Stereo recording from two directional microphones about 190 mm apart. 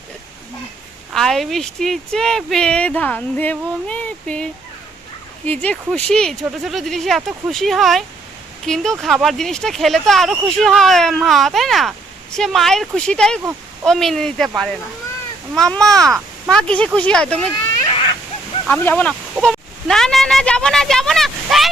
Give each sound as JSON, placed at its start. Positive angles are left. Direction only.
{"t": 1.1, "sound": "speech", "side_deg": 0}
{"t": 5.5, "sound": "speech", "side_deg": 5}
{"t": 17.8, "sound": "a sound", "side_deg": 25}
{"t": 18.7, "sound": "speech", "side_deg": 10}